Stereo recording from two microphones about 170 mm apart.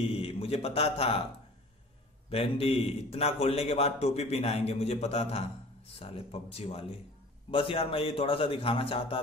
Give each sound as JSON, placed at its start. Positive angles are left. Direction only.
{"t": 0.1, "sound": "a man's voice", "side_deg": 35}
{"t": 2.2, "sound": "a man's voice", "side_deg": 35}